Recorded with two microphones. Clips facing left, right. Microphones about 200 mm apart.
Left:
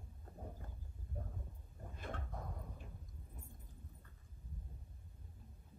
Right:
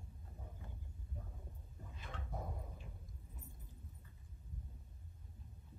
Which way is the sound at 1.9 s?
50° left (ahead or behind).